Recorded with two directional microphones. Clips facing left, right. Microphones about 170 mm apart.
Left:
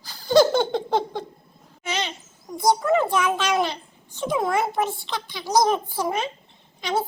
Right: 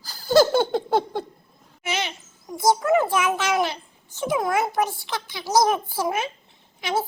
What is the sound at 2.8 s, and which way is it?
A child's voice, 5° right (ahead or behind).